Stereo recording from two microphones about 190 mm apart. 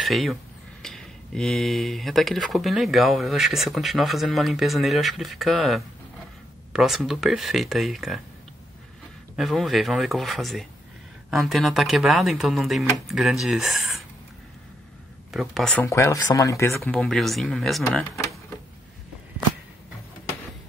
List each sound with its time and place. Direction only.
0.0 s speech: centre (ahead or behind)
9.4 s speech: centre (ahead or behind)
15.3 s speech: centre (ahead or behind)
15.8 s speech: 15° left (ahead or behind)
16.8 s speech: 5° left (ahead or behind)
17.8 s speech: 15° left (ahead or behind)